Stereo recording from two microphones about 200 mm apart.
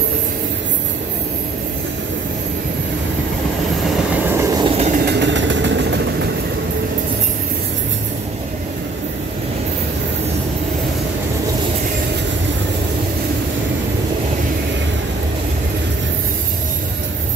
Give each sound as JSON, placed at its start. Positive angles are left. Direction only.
{"t": 4.2, "sound": "train", "side_deg": -15}
{"t": 4.7, "sound": "vehicle", "side_deg": -35}
{"t": 5.0, "sound": "vehicle", "side_deg": -60}